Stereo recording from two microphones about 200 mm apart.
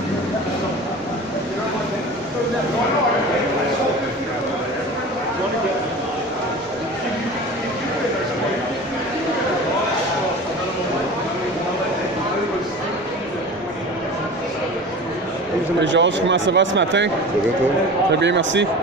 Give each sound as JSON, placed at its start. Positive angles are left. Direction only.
{"t": 15.8, "sound": "speech", "side_deg": -65}
{"t": 18.2, "sound": "speech", "side_deg": -65}